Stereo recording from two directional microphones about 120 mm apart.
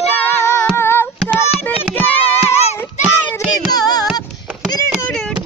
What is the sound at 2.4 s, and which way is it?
Children playing, 65° left (ahead or behind).